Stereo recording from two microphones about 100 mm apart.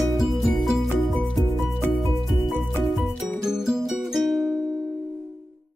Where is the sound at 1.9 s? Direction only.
Centre (ahead or behind).